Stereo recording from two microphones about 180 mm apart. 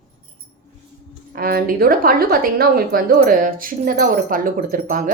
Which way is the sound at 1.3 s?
55° right (ahead or behind).